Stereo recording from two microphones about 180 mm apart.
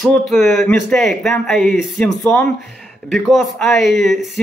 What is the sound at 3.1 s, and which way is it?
Speech, centre (ahead or behind).